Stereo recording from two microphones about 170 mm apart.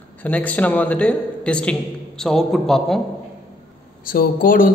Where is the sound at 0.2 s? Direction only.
10° left (ahead or behind).